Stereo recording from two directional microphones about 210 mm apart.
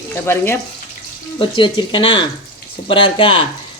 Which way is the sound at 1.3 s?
25° left (ahead or behind).